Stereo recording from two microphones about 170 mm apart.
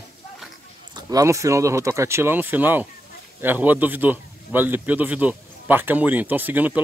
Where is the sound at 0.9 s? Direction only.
20° right (ahead or behind).